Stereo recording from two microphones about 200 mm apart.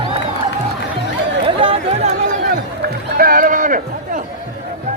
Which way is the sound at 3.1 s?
45° right (ahead or behind).